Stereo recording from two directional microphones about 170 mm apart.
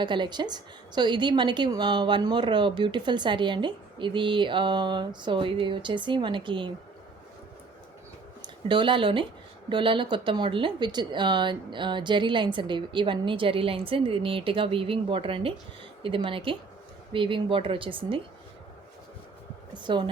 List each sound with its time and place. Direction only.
0.0 s a woman's voice: 25° right (ahead or behind)
8.4 s a woman's voice: 30° right (ahead or behind)
19.7 s a woman's voice: 25° right (ahead or behind)